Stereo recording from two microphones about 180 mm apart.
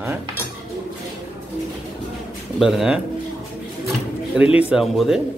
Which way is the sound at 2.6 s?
Centre (ahead or behind).